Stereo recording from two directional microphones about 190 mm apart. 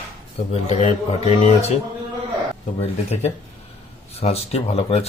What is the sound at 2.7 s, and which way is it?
Speech, 35° left (ahead or behind).